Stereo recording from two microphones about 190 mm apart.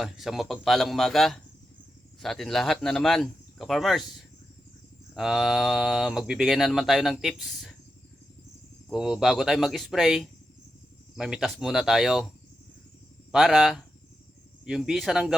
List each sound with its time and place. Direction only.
0.0 s speech: centre (ahead or behind)
5.1 s speech: centre (ahead or behind)
8.9 s speech: 5° right (ahead or behind)
13.3 s speech: centre (ahead or behind)